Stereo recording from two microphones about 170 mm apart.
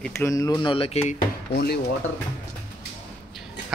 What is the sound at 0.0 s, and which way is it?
Speech, 15° left (ahead or behind).